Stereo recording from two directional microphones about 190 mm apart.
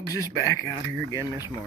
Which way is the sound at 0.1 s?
15° left (ahead or behind).